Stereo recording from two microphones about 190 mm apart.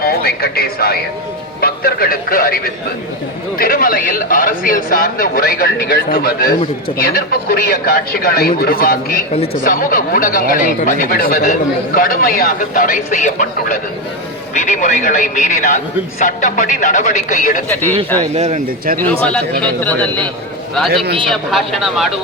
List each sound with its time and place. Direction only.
0.0 s a man's voice: 55° left (ahead or behind)
17.7 s a man's voice: 10° left (ahead or behind)
18.3 s speech: 40° right (ahead or behind)
18.9 s a man's voice: 10° left (ahead or behind)
20.9 s a man's voice: 60° right (ahead or behind)
21.2 s speech: centre (ahead or behind)